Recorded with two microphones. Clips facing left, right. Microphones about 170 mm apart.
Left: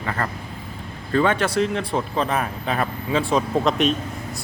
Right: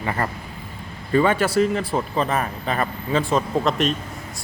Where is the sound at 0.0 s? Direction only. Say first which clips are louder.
Right 1 dB; 15° right (ahead or behind).